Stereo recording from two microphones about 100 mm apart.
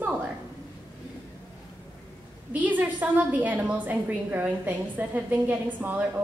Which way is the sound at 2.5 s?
15° right (ahead or behind).